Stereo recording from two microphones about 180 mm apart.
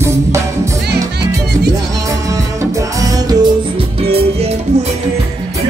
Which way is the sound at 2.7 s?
20° right (ahead or behind).